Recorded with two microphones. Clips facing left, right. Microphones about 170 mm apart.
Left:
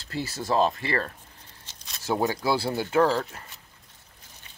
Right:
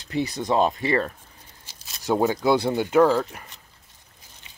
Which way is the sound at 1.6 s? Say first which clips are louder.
Left 1 dB; 5° right (ahead or behind).